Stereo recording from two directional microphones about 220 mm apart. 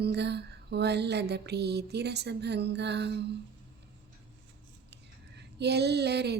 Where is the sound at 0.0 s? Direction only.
50° right (ahead or behind).